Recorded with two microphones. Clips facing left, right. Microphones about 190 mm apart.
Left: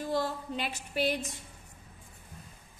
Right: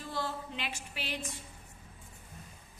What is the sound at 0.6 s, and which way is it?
Speech, 40° left (ahead or behind).